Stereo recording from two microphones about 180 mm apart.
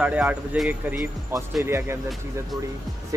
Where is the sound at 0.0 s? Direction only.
5° right (ahead or behind).